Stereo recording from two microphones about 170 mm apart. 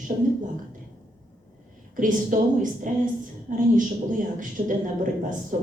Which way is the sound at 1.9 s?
50° right (ahead or behind).